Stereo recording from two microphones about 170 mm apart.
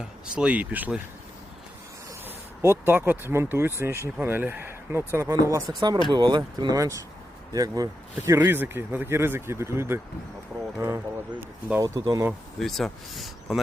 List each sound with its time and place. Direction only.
0.0 s speech: 5° right (ahead or behind)
2.2 s speech: 15° right (ahead or behind)
12.5 s speech: centre (ahead or behind)